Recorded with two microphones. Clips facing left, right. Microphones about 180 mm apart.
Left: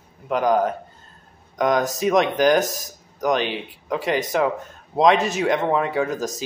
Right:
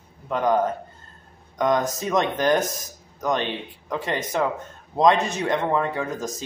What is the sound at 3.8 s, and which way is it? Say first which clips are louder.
Speech: left 4 dB; centre (ahead or behind).